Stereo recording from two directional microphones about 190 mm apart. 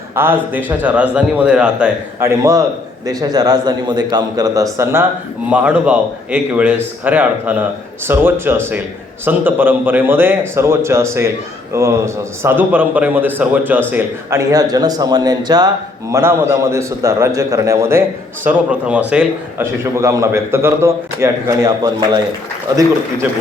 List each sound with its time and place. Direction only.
0.2 s a man's voice: 10° right (ahead or behind)